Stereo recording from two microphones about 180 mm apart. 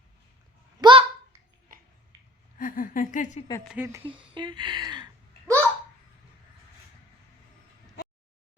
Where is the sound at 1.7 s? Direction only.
50° right (ahead or behind).